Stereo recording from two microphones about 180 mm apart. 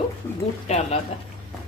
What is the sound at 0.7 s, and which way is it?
Speech, 35° left (ahead or behind).